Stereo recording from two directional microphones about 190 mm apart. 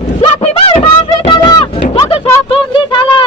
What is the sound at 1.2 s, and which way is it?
Music, 20° left (ahead or behind).